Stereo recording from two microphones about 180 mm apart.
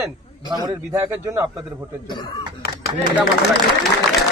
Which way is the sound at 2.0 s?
25° left (ahead or behind).